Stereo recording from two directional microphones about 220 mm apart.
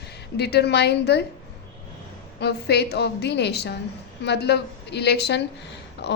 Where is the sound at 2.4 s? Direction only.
50° left (ahead or behind).